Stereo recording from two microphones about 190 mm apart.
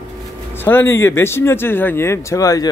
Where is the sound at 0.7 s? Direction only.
10° left (ahead or behind).